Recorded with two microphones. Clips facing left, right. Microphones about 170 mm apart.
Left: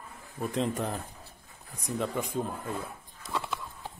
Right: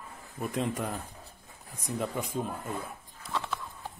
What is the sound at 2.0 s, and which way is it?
Speech, centre (ahead or behind).